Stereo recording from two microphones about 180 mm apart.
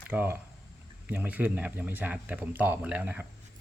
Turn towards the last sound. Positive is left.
turn(degrees=-10)  # may be behind; listen again after turning